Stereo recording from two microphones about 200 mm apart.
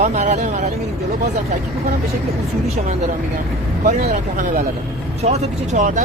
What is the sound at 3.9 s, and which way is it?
Speech, 35° right (ahead or behind).